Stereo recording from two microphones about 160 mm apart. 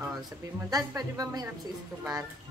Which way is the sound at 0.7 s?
20° right (ahead or behind).